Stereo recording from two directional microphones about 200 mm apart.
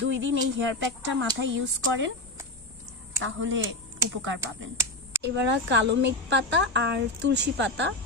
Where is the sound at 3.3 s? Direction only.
75° right (ahead or behind).